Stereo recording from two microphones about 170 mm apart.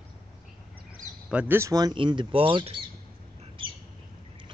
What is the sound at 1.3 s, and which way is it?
Speech, 10° right (ahead or behind).